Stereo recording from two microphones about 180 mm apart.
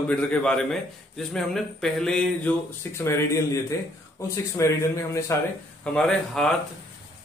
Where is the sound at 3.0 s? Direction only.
15° left (ahead or behind).